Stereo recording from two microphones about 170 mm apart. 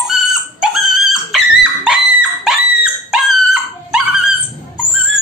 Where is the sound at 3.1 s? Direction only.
5° right (ahead or behind).